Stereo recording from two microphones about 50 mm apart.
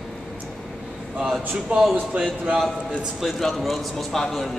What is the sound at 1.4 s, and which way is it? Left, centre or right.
Speech, right.